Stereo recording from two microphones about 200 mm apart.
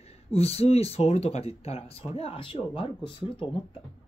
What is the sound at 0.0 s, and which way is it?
Speech, 30° left (ahead or behind).